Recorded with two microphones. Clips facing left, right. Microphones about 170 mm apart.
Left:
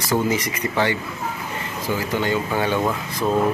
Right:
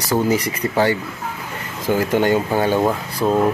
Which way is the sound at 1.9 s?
50° right (ahead or behind).